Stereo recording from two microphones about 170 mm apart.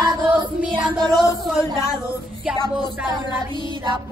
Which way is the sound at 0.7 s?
25° right (ahead or behind).